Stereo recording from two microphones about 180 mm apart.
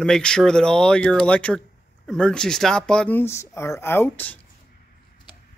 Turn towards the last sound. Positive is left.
turn(degrees=10)  # may be behind; listen again after turning